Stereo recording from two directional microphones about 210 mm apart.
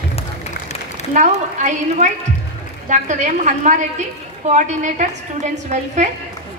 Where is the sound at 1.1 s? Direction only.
35° right (ahead or behind).